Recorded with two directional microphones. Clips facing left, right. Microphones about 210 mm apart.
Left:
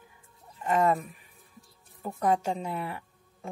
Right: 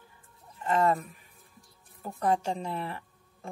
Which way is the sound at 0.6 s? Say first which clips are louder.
Left 1 dB; 15° left (ahead or behind).